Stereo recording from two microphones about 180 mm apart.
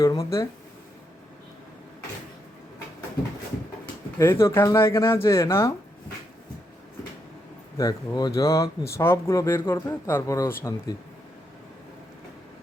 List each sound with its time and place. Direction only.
0.0 s speech: 20° left (ahead or behind)
4.2 s a man's voice: 15° left (ahead or behind)
7.8 s a man's voice: 20° left (ahead or behind)